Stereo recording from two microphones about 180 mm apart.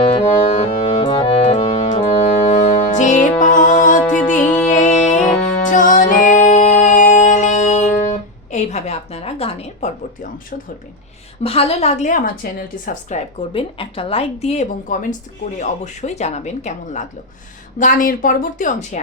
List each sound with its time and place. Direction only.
0.2 s music: 35° left (ahead or behind)
4.4 s music: 10° left (ahead or behind)
4.7 s music: 40° left (ahead or behind)
8.5 s a sound: 40° left (ahead or behind)
11.4 s a woman's voice: 35° left (ahead or behind)